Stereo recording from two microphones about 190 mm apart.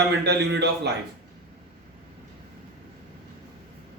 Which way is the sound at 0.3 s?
65° right (ahead or behind).